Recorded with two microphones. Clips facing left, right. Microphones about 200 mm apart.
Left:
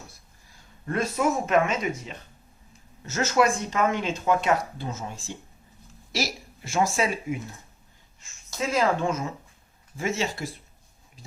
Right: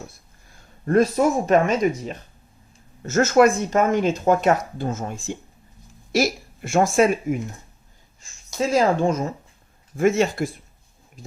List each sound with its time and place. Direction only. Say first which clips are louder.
0.9 s speech: right 7 dB; 40° right (ahead or behind)
8.5 s speech: right 5 dB; 35° right (ahead or behind)
10.0 s speech: right 9 dB; 55° right (ahead or behind)